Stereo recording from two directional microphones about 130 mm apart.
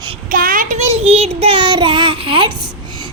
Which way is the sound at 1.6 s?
35° right (ahead or behind).